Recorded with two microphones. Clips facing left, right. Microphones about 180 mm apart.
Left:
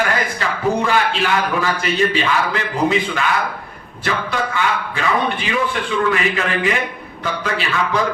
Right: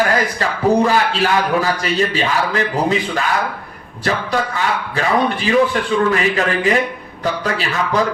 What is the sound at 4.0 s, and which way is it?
A man's voice, 40° right (ahead or behind).